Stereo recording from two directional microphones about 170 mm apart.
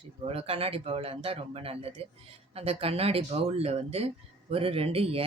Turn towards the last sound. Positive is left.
turn(degrees=-35)  # may be behind; listen again after turning